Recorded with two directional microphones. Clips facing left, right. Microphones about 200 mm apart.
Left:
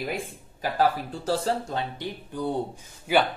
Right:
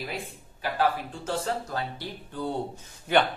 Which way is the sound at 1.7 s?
20° left (ahead or behind).